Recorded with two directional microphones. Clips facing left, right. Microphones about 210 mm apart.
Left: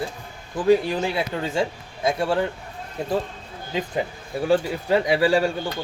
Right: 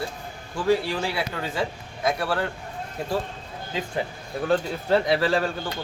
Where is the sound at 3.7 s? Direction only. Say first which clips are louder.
Left 3 dB; 15° left (ahead or behind).